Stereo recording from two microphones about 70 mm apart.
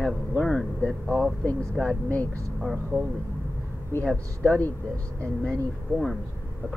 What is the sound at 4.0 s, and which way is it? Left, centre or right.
Speech, centre.